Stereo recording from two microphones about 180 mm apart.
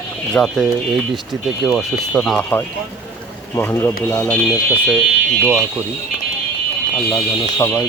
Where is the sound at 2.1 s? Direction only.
5° left (ahead or behind).